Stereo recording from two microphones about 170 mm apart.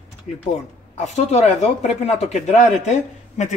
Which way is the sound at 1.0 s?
40° left (ahead or behind).